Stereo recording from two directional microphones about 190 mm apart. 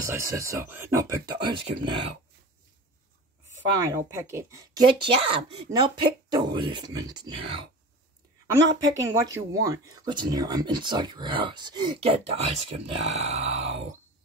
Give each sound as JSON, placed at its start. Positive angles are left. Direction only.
{"t": 0.0, "sound": "speech", "side_deg": -15}
{"t": 3.8, "sound": "speech", "side_deg": -15}
{"t": 8.9, "sound": "speech", "side_deg": -15}